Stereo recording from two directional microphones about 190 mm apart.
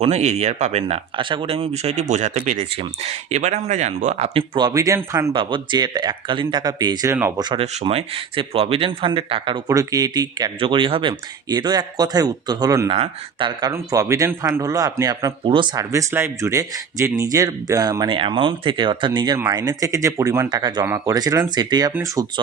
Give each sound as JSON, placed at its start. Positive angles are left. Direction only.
{"t": 0.0, "sound": "speech", "side_deg": -35}